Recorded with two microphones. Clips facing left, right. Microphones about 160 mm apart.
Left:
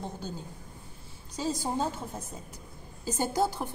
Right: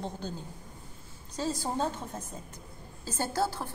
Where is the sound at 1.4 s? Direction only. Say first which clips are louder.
Left 1 dB; 10° left (ahead or behind).